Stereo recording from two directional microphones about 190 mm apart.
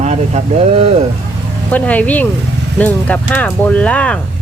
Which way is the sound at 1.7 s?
10° left (ahead or behind).